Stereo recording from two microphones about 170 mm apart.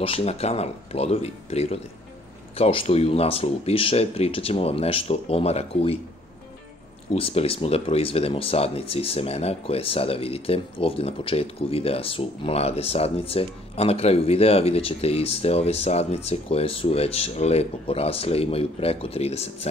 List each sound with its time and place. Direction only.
0.0 s speech: 35° left (ahead or behind)
7.2 s speech: 35° left (ahead or behind)